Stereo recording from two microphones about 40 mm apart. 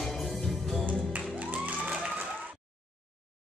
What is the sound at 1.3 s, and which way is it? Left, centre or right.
Music, right.